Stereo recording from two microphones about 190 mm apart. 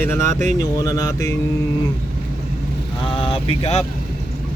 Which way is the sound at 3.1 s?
30° left (ahead or behind).